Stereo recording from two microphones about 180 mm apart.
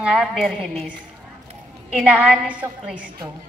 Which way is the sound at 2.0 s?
10° right (ahead or behind).